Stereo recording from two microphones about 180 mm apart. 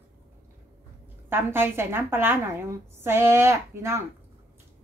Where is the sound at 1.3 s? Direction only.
10° right (ahead or behind).